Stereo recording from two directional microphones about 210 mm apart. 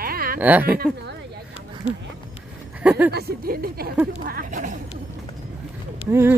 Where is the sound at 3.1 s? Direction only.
50° right (ahead or behind).